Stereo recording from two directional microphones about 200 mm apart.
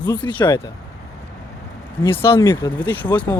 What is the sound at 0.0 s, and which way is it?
Speech, 20° left (ahead or behind).